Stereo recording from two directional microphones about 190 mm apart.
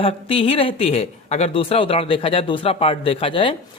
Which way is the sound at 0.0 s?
30° left (ahead or behind).